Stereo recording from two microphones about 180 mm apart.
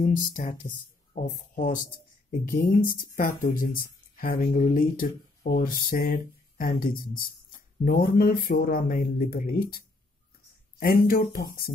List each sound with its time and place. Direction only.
0.0 s speech: 45° left (ahead or behind)